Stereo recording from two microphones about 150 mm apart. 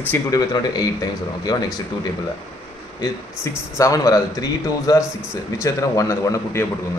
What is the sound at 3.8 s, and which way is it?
Speech, 25° left (ahead or behind).